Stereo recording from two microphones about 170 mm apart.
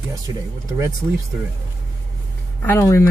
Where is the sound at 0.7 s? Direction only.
20° right (ahead or behind).